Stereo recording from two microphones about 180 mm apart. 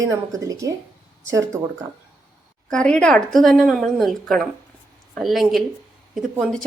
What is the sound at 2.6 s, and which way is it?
A woman's voice, 5° left (ahead or behind).